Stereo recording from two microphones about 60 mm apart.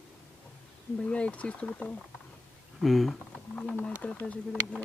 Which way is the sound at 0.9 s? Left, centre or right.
Centre.